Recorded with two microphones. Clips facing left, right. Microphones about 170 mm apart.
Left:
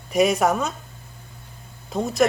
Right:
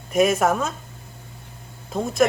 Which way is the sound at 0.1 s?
Centre (ahead or behind).